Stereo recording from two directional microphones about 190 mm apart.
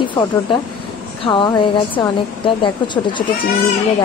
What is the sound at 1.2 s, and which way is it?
Female singing, 25° left (ahead or behind).